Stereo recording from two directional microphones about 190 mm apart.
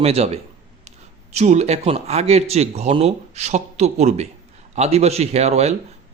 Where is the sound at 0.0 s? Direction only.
35° right (ahead or behind).